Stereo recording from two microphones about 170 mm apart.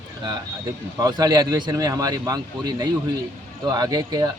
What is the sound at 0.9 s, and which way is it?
A man's voice, 20° right (ahead or behind).